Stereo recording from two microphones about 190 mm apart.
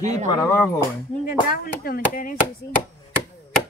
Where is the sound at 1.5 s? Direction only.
50° left (ahead or behind).